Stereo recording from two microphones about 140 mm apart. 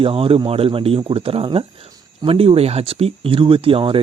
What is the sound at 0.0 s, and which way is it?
Speech, 40° right (ahead or behind).